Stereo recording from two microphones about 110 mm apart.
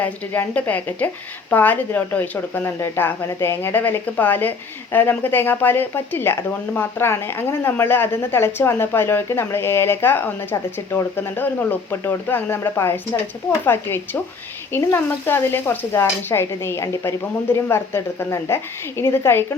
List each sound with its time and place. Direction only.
0.0 s a woman's voice: 15° left (ahead or behind)